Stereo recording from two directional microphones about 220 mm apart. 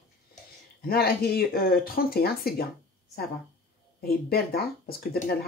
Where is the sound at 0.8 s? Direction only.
45° left (ahead or behind).